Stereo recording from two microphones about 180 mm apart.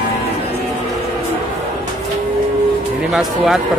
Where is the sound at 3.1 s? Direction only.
Centre (ahead or behind).